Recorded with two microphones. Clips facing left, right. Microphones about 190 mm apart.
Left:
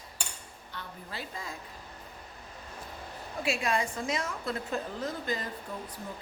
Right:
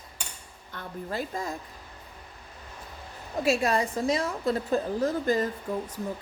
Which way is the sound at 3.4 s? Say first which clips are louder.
Right 5 dB; 40° right (ahead or behind).